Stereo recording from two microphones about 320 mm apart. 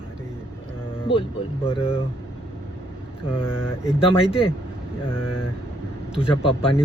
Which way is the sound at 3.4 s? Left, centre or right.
Centre.